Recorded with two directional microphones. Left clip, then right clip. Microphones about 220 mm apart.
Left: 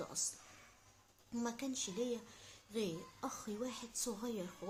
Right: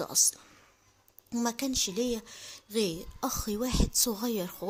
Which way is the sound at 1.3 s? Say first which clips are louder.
Right 11 dB; 45° right (ahead or behind).